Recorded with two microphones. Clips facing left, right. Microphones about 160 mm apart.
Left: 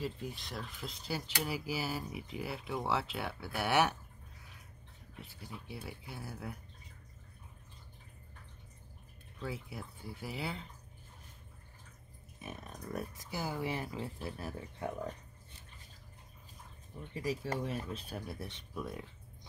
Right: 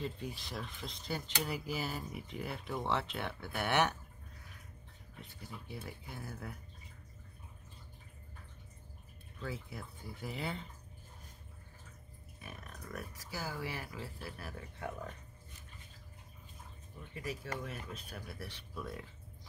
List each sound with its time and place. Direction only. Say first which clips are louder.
0.0 s speech: left 1 dB; centre (ahead or behind)
5.2 s speech: left 1 dB; 5° left (ahead or behind)
9.4 s speech: left 1 dB; 10° left (ahead or behind)
12.4 s speech: left 4 dB; 25° left (ahead or behind)
17.1 s speech: left 5 dB; 30° left (ahead or behind)